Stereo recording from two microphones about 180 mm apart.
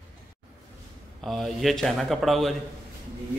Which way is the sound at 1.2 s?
Centre (ahead or behind).